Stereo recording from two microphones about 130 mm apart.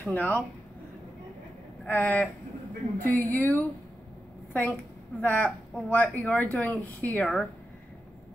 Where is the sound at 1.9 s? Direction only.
10° left (ahead or behind).